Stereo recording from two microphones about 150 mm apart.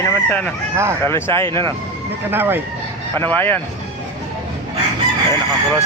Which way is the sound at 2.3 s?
15° right (ahead or behind).